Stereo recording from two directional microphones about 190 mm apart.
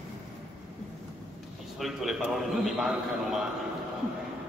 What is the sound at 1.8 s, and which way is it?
A man's voice, centre (ahead or behind).